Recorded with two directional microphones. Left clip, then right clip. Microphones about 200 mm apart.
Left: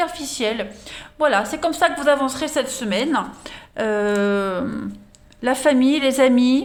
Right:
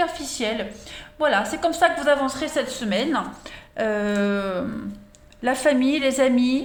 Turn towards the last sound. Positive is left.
turn(degrees=30)  # may be behind; listen again after turning